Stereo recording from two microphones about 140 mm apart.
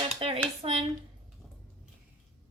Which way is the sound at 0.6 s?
40° right (ahead or behind).